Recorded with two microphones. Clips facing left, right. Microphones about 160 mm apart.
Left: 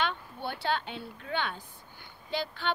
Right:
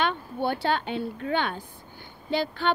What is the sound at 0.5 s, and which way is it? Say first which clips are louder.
Speech: right 5 dB; 50° right (ahead or behind).